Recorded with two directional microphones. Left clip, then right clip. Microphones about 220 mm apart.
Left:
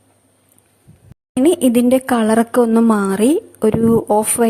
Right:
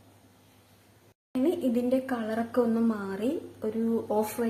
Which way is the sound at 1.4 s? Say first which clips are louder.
Left 14 dB; 50° left (ahead or behind).